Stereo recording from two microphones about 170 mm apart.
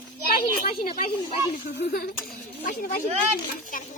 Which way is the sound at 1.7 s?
70° left (ahead or behind).